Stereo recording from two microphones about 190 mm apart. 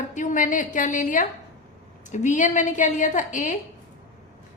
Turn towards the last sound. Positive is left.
turn(degrees=40)  # may be behind; listen again after turning